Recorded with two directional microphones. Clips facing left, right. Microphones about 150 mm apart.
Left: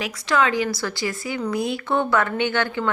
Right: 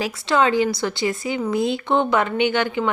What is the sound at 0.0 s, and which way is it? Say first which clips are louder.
Speech: right 2 dB; 30° right (ahead or behind).